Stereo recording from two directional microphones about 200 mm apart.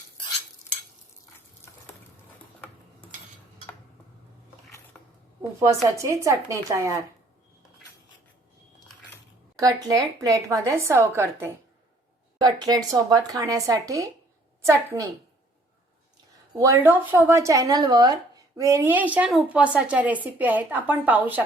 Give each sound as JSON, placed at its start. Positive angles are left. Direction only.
{"t": 2.6, "sound": "tick-tock", "side_deg": 10}
{"t": 5.5, "sound": "speech", "side_deg": -15}
{"t": 9.6, "sound": "speech", "side_deg": -15}
{"t": 16.6, "sound": "speech", "side_deg": -15}